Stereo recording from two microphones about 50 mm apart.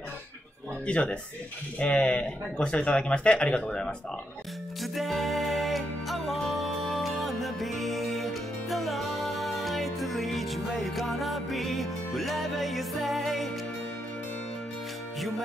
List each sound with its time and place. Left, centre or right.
0.8 s speech: left
4.9 s music: centre
15.1 s music: centre